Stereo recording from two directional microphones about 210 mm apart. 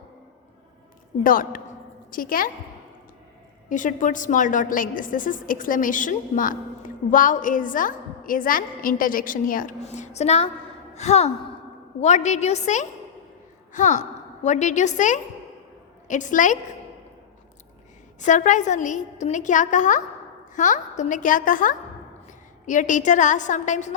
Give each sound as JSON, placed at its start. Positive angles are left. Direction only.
{"t": 1.2, "sound": "a woman's voice", "side_deg": 40}
{"t": 3.7, "sound": "a woman's voice", "side_deg": 40}
{"t": 18.2, "sound": "a woman's voice", "side_deg": 35}